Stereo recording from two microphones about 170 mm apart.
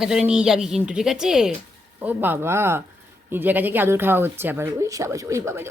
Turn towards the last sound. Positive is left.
turn(degrees=-15)  # may be behind; listen again after turning